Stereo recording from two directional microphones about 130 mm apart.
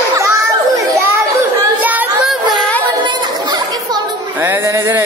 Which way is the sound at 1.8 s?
10° right (ahead or behind).